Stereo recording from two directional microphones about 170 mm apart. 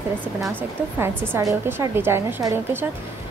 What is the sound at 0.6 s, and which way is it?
A woman's voice, 15° right (ahead or behind).